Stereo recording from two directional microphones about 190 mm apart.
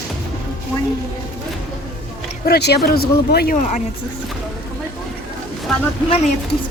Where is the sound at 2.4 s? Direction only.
60° left (ahead or behind).